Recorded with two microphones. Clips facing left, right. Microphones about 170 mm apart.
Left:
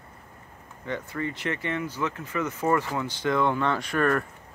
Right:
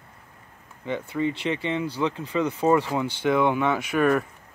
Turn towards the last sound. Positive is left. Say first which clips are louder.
# right 3 dB
turn(degrees=-10)  # may be behind; listen again after turning